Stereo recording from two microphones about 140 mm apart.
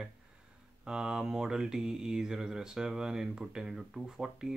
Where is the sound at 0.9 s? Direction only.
5° right (ahead or behind).